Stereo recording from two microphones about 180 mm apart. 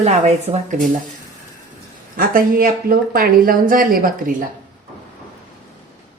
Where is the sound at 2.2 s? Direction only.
50° right (ahead or behind).